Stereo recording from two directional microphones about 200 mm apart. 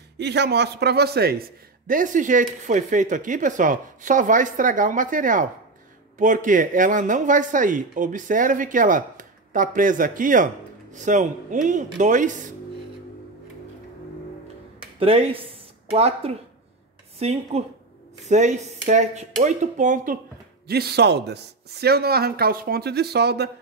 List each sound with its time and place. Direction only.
0.2 s speech: 60° right (ahead or behind); by 12.4 s 40° right (ahead or behind)
15.0 s speech: 25° right (ahead or behind)
20.6 s speech: 50° right (ahead or behind)